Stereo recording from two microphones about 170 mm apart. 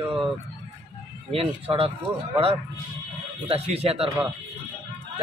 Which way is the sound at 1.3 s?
35° right (ahead or behind).